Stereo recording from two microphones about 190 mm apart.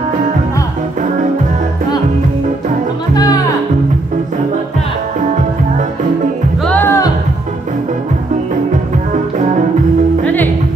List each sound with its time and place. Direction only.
3.2 s music: 20° left (ahead or behind)
6.6 s music: 10° left (ahead or behind)
10.2 s music: 10° left (ahead or behind)